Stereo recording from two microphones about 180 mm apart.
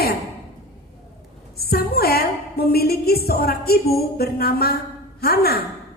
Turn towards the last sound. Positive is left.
turn(degrees=60)  # may be behind; listen again after turning